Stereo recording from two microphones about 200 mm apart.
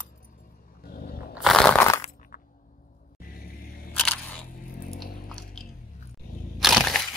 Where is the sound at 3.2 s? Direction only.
45° left (ahead or behind).